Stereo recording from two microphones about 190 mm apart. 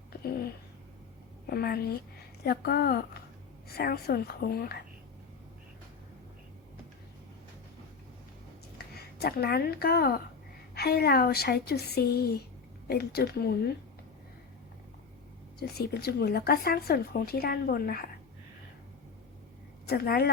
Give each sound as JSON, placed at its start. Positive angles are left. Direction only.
{"t": 1.5, "sound": "speech", "side_deg": 55}
{"t": 9.0, "sound": "a woman's voice", "side_deg": 55}
{"t": 15.5, "sound": "speech", "side_deg": 55}
{"t": 19.9, "sound": "speech", "side_deg": 55}